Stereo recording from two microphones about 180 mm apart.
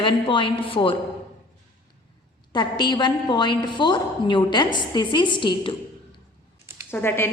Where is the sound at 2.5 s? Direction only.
25° left (ahead or behind).